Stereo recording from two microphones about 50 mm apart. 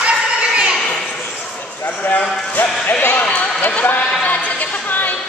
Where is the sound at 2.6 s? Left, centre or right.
Left.